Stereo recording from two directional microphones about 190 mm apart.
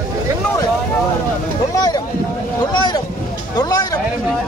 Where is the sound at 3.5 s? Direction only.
20° left (ahead or behind).